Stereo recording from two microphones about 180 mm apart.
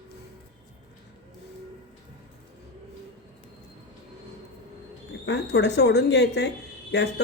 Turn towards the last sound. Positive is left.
turn(degrees=70)  # may be behind; listen again after turning